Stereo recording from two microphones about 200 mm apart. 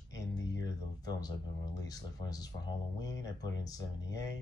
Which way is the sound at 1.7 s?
20° left (ahead or behind).